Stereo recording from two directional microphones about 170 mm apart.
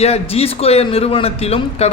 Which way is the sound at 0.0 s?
35° left (ahead or behind).